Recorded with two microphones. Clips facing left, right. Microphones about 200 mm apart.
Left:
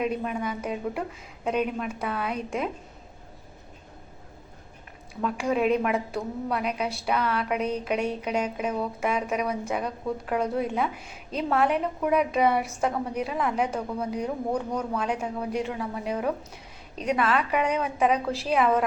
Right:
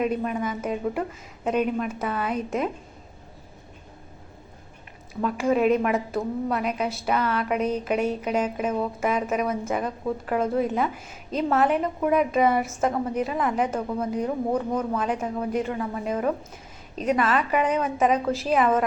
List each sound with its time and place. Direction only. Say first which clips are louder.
0.0 s a woman's voice: right 3 dB; centre (ahead or behind)
5.2 s a woman's voice: right 3 dB; centre (ahead or behind)